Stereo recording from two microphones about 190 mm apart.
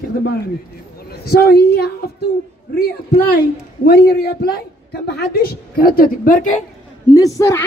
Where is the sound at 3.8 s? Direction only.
55° left (ahead or behind).